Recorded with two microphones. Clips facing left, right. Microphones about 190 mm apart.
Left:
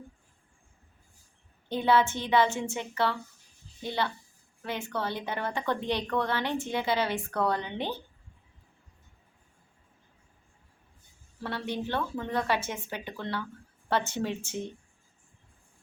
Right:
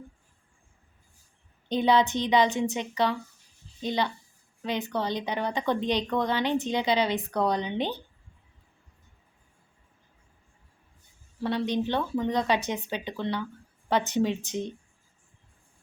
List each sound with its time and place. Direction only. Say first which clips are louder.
1.7 s a woman's voice: right 2 dB; 15° right (ahead or behind)
11.4 s a woman's voice: right 6 dB; 15° right (ahead or behind)